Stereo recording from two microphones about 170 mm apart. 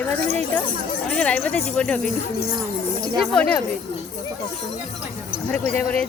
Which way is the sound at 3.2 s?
5° left (ahead or behind).